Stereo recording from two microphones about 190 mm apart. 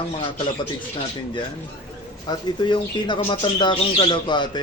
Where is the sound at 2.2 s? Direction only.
25° left (ahead or behind).